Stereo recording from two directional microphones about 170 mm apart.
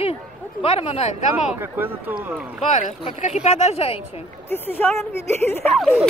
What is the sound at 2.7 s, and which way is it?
Speech, 45° left (ahead or behind).